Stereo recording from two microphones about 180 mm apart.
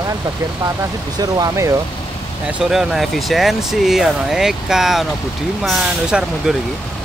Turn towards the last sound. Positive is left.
turn(degrees=-5)  # may be behind; listen again after turning